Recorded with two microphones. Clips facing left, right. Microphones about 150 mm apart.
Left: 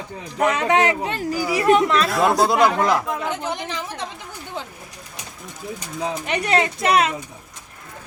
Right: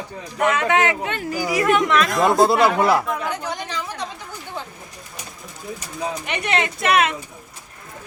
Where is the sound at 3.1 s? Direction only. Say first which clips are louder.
Even; 20° left (ahead or behind).